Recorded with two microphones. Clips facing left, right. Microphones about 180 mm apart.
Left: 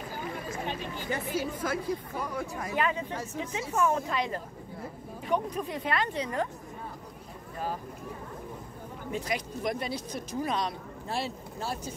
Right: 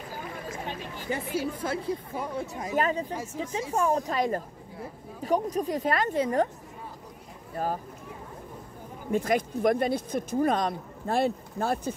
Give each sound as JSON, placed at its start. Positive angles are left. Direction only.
{"t": 1.1, "sound": "speech", "side_deg": -25}
{"t": 2.7, "sound": "speech", "side_deg": -40}
{"t": 7.5, "sound": "speech", "side_deg": -45}
{"t": 9.1, "sound": "speech", "side_deg": -50}